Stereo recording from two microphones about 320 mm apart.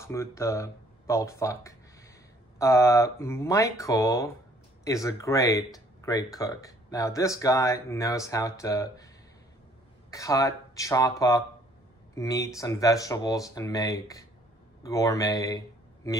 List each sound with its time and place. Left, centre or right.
0.0 s speech: centre
10.1 s speech: centre